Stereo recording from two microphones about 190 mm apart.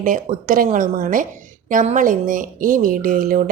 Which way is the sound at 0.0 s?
45° right (ahead or behind).